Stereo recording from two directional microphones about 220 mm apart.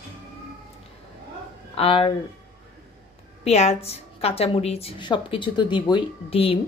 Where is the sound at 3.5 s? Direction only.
30° left (ahead or behind).